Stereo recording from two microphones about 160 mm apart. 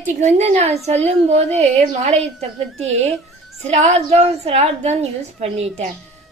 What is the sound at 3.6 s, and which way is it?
A woman's voice, 40° right (ahead or behind).